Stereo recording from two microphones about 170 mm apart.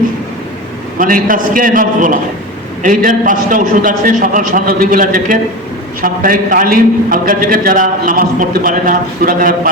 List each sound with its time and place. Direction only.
0.9 s a man's voice: 55° right (ahead or behind)